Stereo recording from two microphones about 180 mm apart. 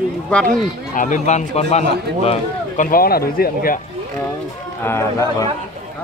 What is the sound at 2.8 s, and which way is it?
Speech, 55° left (ahead or behind).